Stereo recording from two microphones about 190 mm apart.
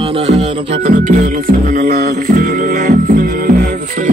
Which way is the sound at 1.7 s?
50° right (ahead or behind).